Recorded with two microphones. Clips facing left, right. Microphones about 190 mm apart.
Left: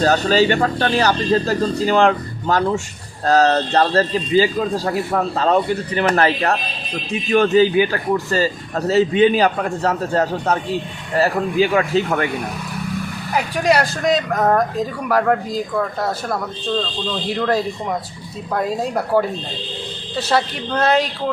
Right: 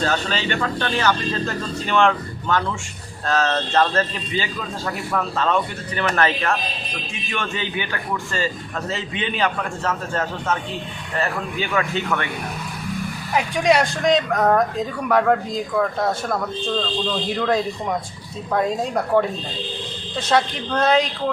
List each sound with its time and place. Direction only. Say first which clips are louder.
0.0 s a man's voice: left 8 dB; 40° left (ahead or behind)
13.3 s speech: left 1 dB; centre (ahead or behind)